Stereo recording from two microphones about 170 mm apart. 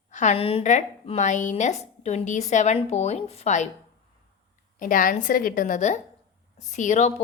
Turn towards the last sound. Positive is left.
turn(degrees=45)  # may be behind; listen again after turning